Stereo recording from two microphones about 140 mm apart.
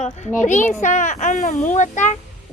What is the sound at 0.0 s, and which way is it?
Speech, 60° left (ahead or behind).